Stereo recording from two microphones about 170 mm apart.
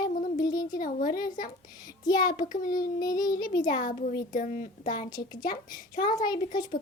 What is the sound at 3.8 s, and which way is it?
Speech, 50° left (ahead or behind).